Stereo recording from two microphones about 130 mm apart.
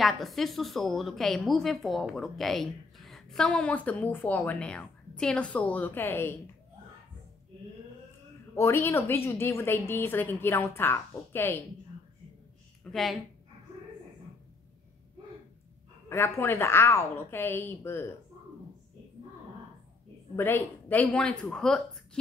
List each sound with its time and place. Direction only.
0.0 s a woman's voice: centre (ahead or behind); by 6.3 s 15° left (ahead or behind)
8.5 s a woman's voice: 20° left (ahead or behind)
12.9 s a woman's voice: centre (ahead or behind)
16.1 s a woman's voice: 20° left (ahead or behind)
20.3 s a woman's voice: 15° left (ahead or behind)